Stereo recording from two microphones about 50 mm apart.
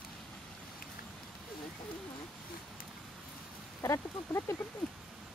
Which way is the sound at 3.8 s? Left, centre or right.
Left.